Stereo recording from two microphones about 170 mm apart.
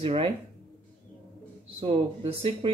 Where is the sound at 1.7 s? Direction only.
35° right (ahead or behind).